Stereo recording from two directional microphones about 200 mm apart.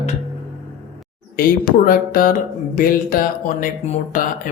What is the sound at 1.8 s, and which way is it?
Speech, 45° left (ahead or behind).